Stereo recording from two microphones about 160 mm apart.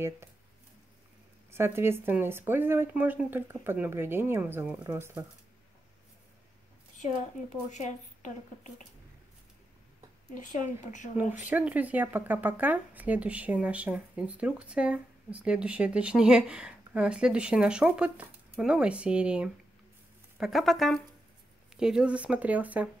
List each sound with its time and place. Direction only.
1.5 s speech: 15° right (ahead or behind)
7.0 s speech: 50° left (ahead or behind)
10.3 s speech: 55° left (ahead or behind)
11.4 s speech: 10° right (ahead or behind)